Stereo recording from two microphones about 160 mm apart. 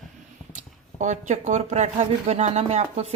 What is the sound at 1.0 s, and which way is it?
Speech, 45° right (ahead or behind).